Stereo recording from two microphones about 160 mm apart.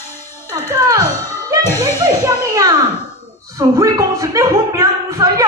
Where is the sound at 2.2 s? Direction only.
20° right (ahead or behind).